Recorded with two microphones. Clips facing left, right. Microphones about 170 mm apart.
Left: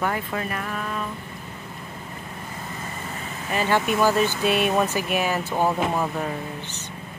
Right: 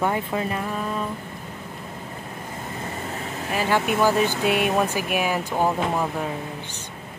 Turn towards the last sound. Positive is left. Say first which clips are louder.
# even
turn(degrees=-5)  # may be behind; listen again after turning